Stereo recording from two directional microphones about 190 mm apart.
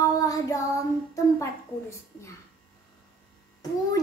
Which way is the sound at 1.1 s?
15° left (ahead or behind).